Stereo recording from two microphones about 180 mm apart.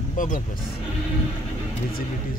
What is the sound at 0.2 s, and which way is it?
Speech, 50° left (ahead or behind).